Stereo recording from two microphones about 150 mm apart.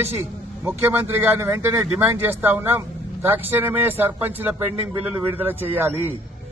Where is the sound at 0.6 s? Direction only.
15° right (ahead or behind).